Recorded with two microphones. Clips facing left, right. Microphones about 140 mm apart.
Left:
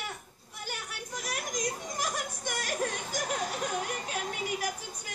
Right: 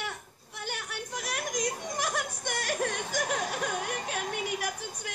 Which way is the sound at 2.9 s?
40° left (ahead or behind).